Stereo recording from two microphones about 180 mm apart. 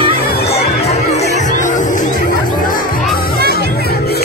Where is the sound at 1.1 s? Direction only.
40° left (ahead or behind).